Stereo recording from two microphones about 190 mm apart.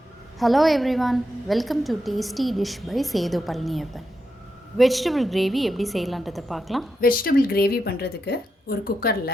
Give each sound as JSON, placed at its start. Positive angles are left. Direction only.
{"t": 0.3, "sound": "a woman's voice", "side_deg": 0}
{"t": 7.0, "sound": "a woman's voice", "side_deg": 50}